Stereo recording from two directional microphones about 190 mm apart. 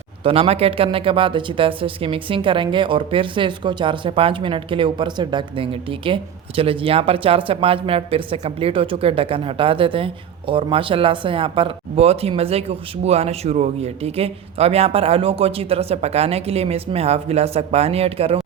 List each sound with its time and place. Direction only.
0.3 s speech: 30° right (ahead or behind)